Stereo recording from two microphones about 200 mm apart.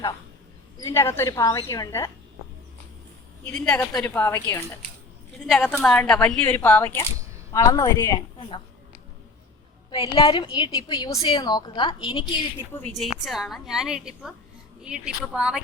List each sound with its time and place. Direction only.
0.8 s speech: 15° left (ahead or behind)
3.4 s speech: 5° left (ahead or behind)
5.4 s a woman's voice: centre (ahead or behind); by 8.6 s 25° left (ahead or behind)
9.9 s a woman's voice: 25° left (ahead or behind)
13.0 s a woman's voice: centre (ahead or behind)